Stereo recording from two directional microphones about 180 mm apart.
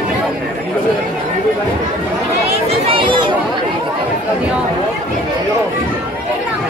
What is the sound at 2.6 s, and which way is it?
Chatter, 30° right (ahead or behind).